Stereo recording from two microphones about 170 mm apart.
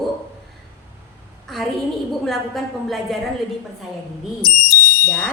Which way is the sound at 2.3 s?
Centre (ahead or behind).